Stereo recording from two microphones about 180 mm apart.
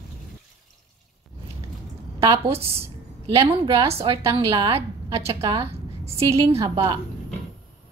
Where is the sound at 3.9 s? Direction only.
30° right (ahead or behind).